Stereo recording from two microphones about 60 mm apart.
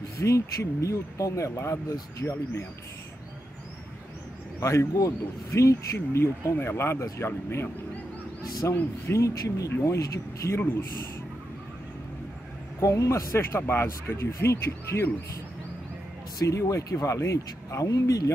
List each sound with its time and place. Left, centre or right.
0.2 s speech: left
4.6 s speech: left
8.6 s speech: left
9.0 s speech: left
12.8 s speech: left
13.4 s speech: left
16.5 s speech: left